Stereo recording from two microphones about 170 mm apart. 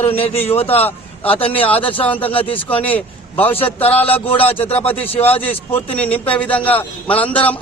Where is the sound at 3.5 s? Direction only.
35° left (ahead or behind).